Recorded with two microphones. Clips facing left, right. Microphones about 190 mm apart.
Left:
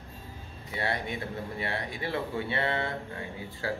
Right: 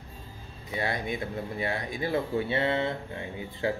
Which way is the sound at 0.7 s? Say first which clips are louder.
Right 2 dB; 30° left (ahead or behind).